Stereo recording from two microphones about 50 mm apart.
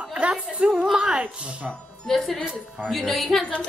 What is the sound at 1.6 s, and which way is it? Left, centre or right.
A woman's voice, centre.